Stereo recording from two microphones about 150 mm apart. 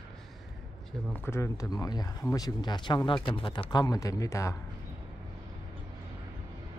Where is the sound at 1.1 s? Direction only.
15° left (ahead or behind).